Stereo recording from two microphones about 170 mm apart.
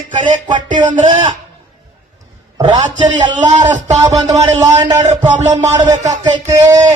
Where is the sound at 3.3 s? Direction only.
45° right (ahead or behind).